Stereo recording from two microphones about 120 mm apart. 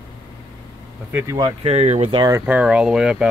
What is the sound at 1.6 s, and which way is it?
Speech, 70° right (ahead or behind).